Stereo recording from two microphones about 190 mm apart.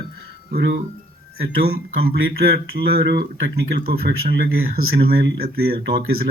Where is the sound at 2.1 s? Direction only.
55° right (ahead or behind).